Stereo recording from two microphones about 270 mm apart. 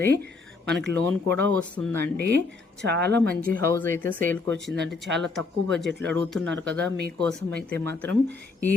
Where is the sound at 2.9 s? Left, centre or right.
Right.